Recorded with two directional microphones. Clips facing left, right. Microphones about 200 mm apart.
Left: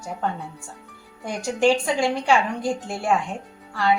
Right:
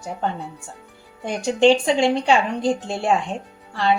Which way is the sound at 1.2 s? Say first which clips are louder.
Right 4 dB; 25° right (ahead or behind).